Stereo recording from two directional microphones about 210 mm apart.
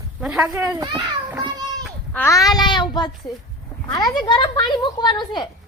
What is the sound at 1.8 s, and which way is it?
A child's voice, 10° left (ahead or behind).